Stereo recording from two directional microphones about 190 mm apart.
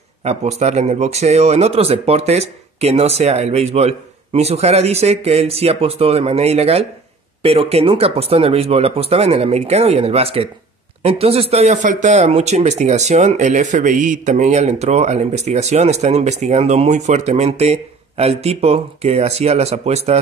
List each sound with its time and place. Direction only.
0.2 s speech: 35° right (ahead or behind)